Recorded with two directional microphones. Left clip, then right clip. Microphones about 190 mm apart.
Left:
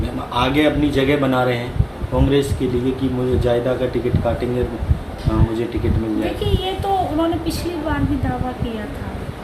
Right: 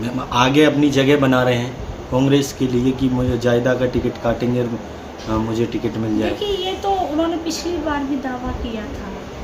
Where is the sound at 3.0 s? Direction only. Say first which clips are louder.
Even; 55° right (ahead or behind).